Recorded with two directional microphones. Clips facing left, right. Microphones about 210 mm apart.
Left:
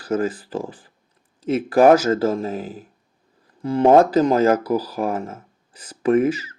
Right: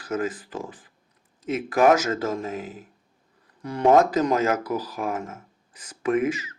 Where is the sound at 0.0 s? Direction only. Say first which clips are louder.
Left 5 dB; 35° left (ahead or behind).